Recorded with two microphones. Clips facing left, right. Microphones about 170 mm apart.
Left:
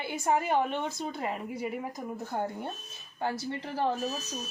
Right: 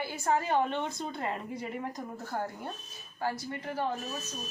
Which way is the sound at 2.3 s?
25° left (ahead or behind).